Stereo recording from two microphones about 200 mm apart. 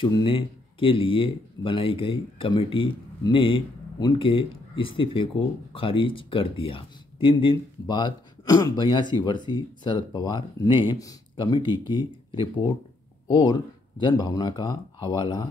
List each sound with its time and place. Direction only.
0.0 s speech: 25° left (ahead or behind)